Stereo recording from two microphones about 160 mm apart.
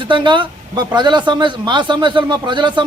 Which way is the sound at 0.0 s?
30° right (ahead or behind).